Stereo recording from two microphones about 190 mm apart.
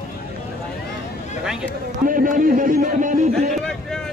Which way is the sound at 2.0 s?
45° right (ahead or behind).